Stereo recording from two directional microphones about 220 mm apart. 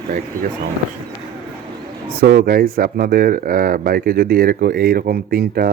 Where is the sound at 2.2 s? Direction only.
40° right (ahead or behind).